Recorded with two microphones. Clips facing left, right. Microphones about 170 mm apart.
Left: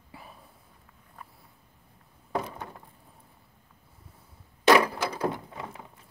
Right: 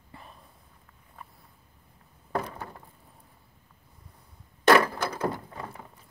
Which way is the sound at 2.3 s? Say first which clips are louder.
Even; centre (ahead or behind).